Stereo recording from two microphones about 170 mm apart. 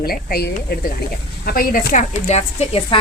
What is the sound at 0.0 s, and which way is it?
A woman's voice, 60° left (ahead or behind).